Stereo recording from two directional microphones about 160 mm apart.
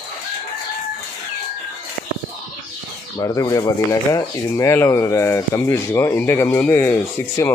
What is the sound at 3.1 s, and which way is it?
Speech, 20° left (ahead or behind).